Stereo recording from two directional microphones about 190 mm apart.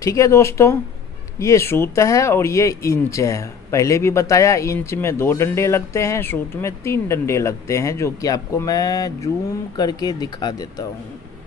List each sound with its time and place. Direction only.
0.0 s speech: 15° left (ahead or behind)